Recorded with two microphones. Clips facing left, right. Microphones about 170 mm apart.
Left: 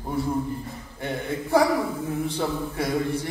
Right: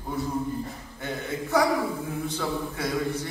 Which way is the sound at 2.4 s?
30° left (ahead or behind).